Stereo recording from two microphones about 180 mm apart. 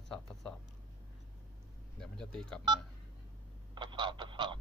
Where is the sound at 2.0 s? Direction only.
5° left (ahead or behind).